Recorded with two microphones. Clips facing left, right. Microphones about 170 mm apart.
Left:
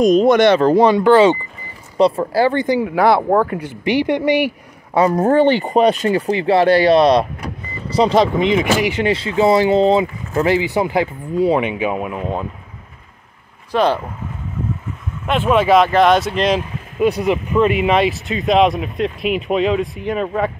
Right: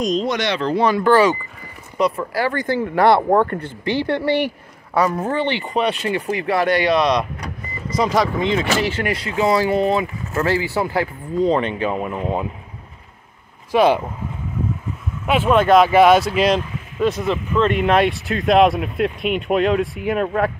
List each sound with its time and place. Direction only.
0.0 s speech: 55° left (ahead or behind)
0.8 s speech: 20° left (ahead or behind)
2.9 s speech: centre (ahead or behind)
5.1 s speech: 45° left (ahead or behind); by 9.0 s 15° left (ahead or behind)
9.0 s speech: 25° left (ahead or behind); by 12.4 s 5° left (ahead or behind)
13.7 s speech: 10° right (ahead or behind)
15.2 s speech: 5° right (ahead or behind)
17.0 s speech: 15° left (ahead or behind); by 20.5 s centre (ahead or behind)